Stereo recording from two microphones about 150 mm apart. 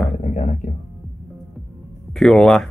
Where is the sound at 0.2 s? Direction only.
50° left (ahead or behind).